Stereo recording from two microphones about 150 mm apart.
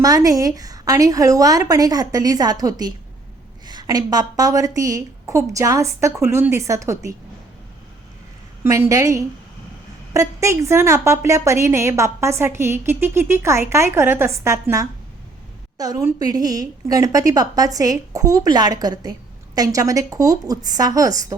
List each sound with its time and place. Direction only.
0.0 s a woman's voice: 25° right (ahead or behind)
8.6 s a woman's voice: 20° right (ahead or behind)